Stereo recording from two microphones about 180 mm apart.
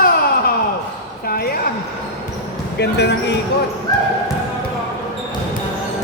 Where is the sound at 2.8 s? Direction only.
70° left (ahead or behind).